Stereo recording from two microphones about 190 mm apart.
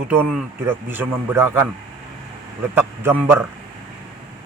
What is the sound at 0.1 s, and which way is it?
A man's voice, 10° right (ahead or behind).